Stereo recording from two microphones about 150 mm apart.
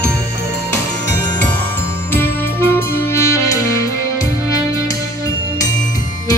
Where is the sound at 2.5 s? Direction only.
15° left (ahead or behind).